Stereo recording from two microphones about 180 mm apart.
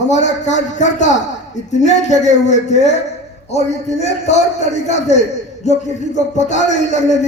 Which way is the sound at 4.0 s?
40° left (ahead or behind).